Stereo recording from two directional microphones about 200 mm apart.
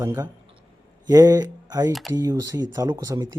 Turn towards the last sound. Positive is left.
turn(degrees=-20)  # may be behind; listen again after turning